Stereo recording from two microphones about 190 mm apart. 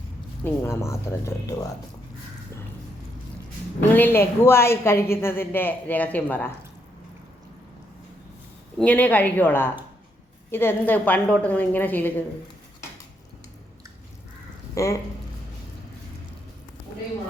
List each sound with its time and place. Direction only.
0.4 s a woman's voice: 10° left (ahead or behind)
3.8 s a woman's voice: 10° left (ahead or behind)
8.8 s a woman's voice: 5° left (ahead or behind)
14.8 s a woman's voice: 15° left (ahead or behind)